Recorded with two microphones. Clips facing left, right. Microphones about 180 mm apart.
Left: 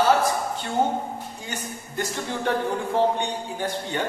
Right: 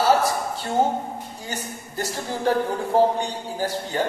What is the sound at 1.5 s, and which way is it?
Speech, 35° right (ahead or behind).